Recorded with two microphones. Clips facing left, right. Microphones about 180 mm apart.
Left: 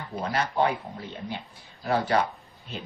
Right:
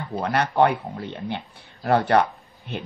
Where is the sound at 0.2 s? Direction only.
65° right (ahead or behind).